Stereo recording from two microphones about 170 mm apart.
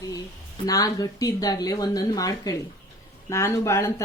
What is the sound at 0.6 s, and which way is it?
A woman's voice, 20° left (ahead or behind).